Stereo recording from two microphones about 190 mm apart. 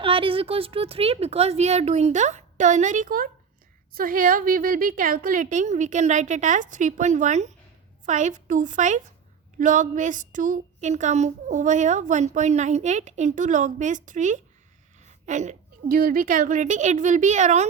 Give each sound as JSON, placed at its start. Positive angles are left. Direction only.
{"t": 0.0, "sound": "speech", "side_deg": -30}